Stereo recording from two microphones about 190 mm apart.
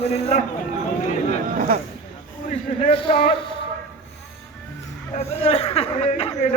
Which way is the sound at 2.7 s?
30° left (ahead or behind).